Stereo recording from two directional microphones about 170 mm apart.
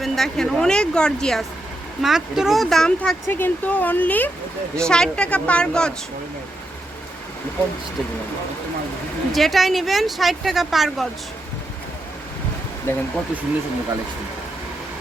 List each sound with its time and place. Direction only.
0.0 s speech: centre (ahead or behind)
9.3 s speech: centre (ahead or behind)
12.9 s speech: 15° left (ahead or behind)